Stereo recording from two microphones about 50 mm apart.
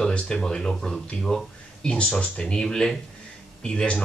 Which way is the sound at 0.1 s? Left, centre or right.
Centre.